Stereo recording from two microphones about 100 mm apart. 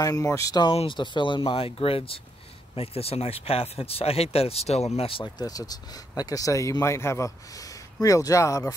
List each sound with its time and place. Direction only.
0.0 s speech: 35° left (ahead or behind)
0.8 s speech: 50° left (ahead or behind); by 5.2 s 80° left
5.2 s speech: 35° left (ahead or behind)